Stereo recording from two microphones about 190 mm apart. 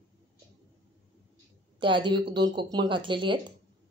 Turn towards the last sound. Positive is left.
turn(degrees=-25)  # may be behind; listen again after turning